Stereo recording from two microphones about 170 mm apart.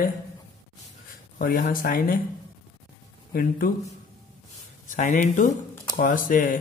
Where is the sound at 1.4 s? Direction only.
55° left (ahead or behind).